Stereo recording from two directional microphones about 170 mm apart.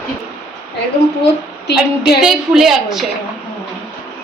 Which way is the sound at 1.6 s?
75° left (ahead or behind).